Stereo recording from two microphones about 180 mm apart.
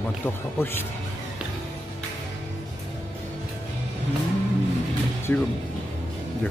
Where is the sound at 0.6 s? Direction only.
15° left (ahead or behind).